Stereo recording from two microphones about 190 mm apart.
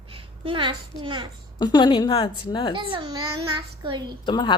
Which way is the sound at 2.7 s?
25° right (ahead or behind).